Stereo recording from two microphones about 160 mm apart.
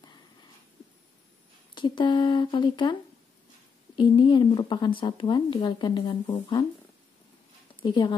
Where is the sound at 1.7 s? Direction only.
30° left (ahead or behind).